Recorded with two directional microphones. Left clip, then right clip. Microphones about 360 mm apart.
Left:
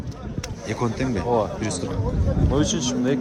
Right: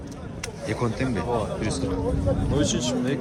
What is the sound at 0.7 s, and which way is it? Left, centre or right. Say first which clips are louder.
Speech: left 2 dB; centre.